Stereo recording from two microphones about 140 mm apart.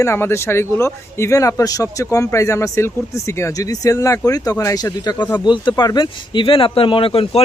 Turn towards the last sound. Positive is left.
turn(degrees=40)  # may be behind; listen again after turning